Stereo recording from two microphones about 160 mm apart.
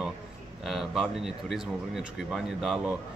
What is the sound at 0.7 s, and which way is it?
Speech, centre (ahead or behind).